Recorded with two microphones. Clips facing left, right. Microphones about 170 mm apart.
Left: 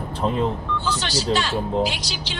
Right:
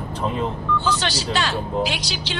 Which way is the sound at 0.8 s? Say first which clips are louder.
Right 1 dB; 70° right (ahead or behind).